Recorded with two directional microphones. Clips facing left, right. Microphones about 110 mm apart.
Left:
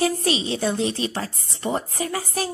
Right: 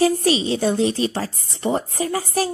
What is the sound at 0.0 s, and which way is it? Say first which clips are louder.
A woman's voice: right 5 dB; 35° right (ahead or behind).